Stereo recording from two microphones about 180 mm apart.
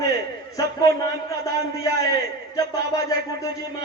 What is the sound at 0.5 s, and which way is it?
A man's voice, 20° left (ahead or behind).